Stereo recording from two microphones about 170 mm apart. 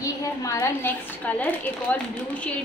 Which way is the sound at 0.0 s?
20° left (ahead or behind).